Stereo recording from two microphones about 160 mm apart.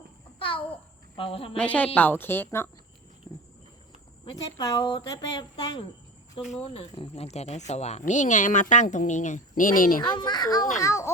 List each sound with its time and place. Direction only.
0.3 s a sound: 35° left (ahead or behind)
1.1 s a woman's voice: 35° left (ahead or behind)
1.5 s a woman's voice: 10° left (ahead or behind)
3.3 s cricket: 20° left (ahead or behind)
4.3 s speech: 25° left (ahead or behind); by 10.0 s 60° left (ahead or behind)
10.0 s speech: 25° left (ahead or behind)